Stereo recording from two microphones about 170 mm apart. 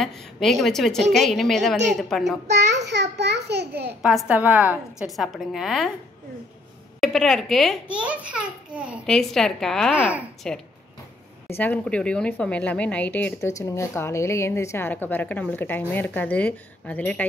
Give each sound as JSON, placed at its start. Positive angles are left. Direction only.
{"t": 0.0, "sound": "a child's voice", "side_deg": 0}
{"t": 2.5, "sound": "a child's voice", "side_deg": -90}
{"t": 4.0, "sound": "a child's voice", "side_deg": 0}
{"t": 7.0, "sound": "a child's voice", "side_deg": 0}
{"t": 11.4, "sound": "a woman's voice", "side_deg": 10}